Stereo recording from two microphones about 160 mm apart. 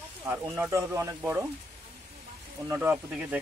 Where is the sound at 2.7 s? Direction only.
15° right (ahead or behind).